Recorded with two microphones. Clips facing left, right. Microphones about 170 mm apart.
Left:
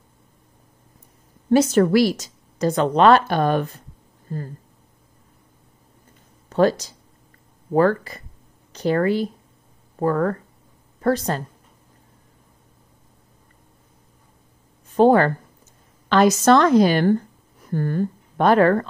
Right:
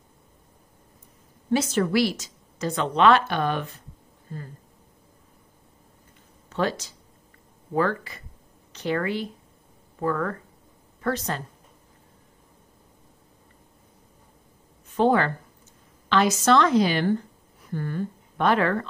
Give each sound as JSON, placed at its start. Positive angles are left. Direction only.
{"t": 1.5, "sound": "a woman's voice", "side_deg": 45}
{"t": 6.5, "sound": "a woman's voice", "side_deg": 40}
{"t": 14.9, "sound": "a woman's voice", "side_deg": 40}